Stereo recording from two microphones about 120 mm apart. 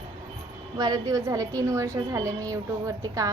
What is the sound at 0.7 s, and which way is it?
A woman's voice, 35° right (ahead or behind).